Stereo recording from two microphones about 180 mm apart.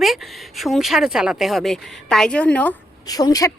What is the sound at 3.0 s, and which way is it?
Speech, 20° left (ahead or behind).